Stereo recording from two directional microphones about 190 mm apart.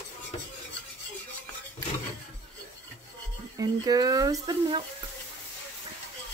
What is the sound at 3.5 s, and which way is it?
Speech, 20° right (ahead or behind).